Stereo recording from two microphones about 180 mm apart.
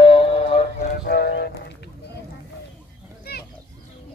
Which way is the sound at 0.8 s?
60° left (ahead or behind).